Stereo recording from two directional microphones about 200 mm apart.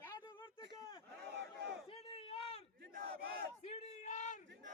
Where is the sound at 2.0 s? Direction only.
30° left (ahead or behind).